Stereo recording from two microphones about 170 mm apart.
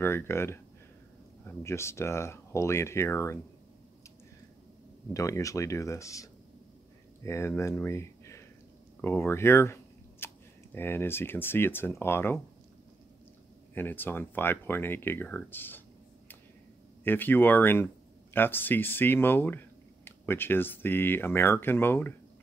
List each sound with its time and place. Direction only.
0.0 s speech: 15° left (ahead or behind)
5.1 s speech: 20° left (ahead or behind)
13.7 s speech: 10° left (ahead or behind)
17.0 s speech: 10° left (ahead or behind)